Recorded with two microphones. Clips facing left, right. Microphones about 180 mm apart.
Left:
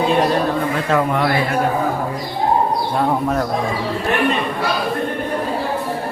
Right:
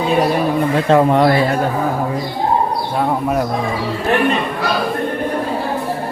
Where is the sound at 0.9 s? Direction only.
30° right (ahead or behind).